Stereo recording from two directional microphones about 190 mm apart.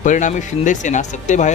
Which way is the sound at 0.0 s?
40° left (ahead or behind).